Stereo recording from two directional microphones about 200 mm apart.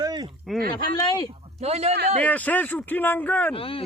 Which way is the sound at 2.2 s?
10° left (ahead or behind).